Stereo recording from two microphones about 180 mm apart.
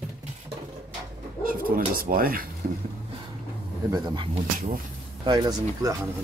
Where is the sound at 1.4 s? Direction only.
50° right (ahead or behind).